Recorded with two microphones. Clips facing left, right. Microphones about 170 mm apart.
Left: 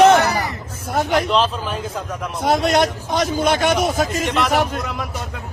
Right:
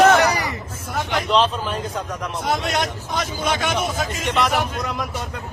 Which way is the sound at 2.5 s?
40° left (ahead or behind).